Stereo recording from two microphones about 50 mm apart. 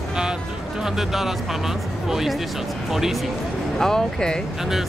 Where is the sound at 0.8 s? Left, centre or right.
Centre.